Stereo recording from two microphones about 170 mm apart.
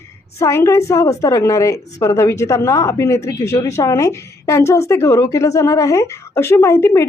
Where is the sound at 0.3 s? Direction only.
15° left (ahead or behind).